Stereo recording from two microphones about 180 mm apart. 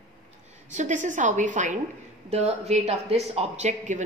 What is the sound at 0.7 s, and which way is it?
A woman's voice, 45° right (ahead or behind).